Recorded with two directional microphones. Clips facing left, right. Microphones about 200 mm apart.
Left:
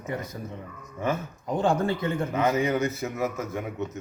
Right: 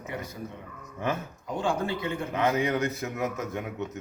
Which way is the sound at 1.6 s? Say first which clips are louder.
Left 4 dB; 45° left (ahead or behind).